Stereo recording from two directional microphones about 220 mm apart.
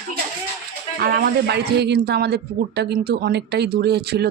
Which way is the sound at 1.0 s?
45° right (ahead or behind).